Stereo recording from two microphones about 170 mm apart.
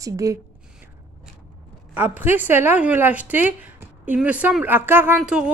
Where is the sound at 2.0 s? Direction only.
10° right (ahead or behind).